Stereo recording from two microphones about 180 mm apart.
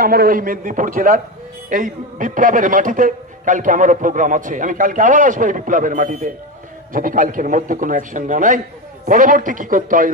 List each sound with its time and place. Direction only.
0.0 s a man's voice: 55° right (ahead or behind)